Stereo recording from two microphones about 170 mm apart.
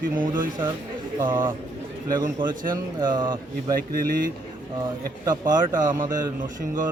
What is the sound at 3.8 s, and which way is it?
Speech, 60° right (ahead or behind).